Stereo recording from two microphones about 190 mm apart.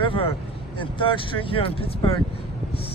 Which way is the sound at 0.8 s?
25° left (ahead or behind).